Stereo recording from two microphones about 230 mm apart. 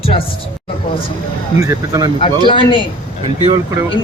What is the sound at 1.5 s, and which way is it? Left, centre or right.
Speech, centre.